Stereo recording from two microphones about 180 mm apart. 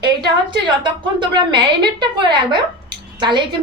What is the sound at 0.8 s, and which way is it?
A woman's voice, 25° right (ahead or behind).